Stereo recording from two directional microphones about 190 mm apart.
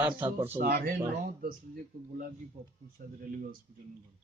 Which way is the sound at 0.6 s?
50° right (ahead or behind).